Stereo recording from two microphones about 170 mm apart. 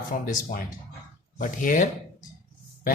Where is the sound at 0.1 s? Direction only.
50° left (ahead or behind).